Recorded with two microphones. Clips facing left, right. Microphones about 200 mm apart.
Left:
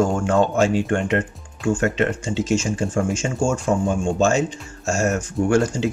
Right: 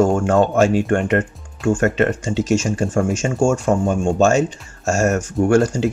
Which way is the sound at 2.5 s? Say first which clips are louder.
Right 3 dB; 85° right.